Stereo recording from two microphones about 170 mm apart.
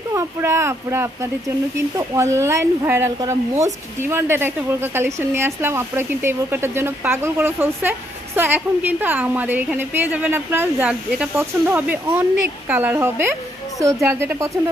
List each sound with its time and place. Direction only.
0.1 s a woman's voice: 15° right (ahead or behind)